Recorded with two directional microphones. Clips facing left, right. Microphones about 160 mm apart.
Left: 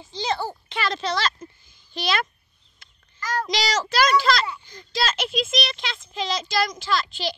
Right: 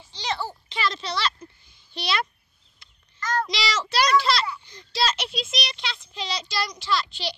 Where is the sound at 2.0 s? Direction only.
50° left (ahead or behind).